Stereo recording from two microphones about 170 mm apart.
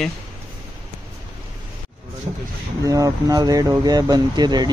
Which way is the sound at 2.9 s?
20° right (ahead or behind).